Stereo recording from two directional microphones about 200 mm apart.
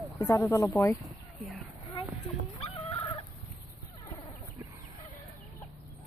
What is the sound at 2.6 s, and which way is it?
Chicken, 30° left (ahead or behind).